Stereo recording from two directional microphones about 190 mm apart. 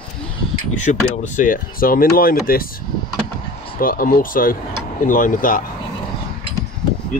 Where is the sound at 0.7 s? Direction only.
40° left (ahead or behind).